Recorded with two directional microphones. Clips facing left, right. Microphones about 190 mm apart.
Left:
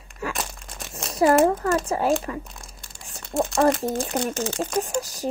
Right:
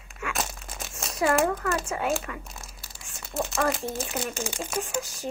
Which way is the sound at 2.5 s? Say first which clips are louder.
Even; 5° right (ahead or behind).